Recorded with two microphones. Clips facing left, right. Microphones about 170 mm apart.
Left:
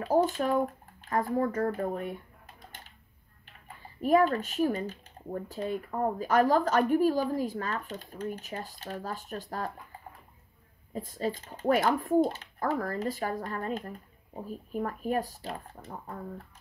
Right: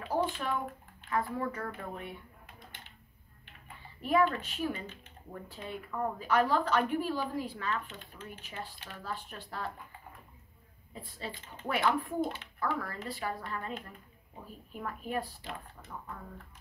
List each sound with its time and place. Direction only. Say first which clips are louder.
0.0 s speech: left 7 dB; 45° left (ahead or behind)
4.0 s speech: left 4 dB; 40° left (ahead or behind)
10.9 s speech: left 10 dB; 45° left (ahead or behind)